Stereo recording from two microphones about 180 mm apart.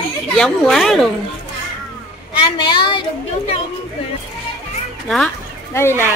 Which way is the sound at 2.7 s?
25° left (ahead or behind).